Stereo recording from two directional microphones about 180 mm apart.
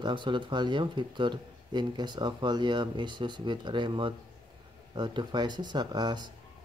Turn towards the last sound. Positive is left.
turn(degrees=-25)  # may be behind; listen again after turning